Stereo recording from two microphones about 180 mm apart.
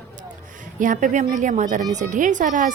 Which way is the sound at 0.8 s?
45° right (ahead or behind).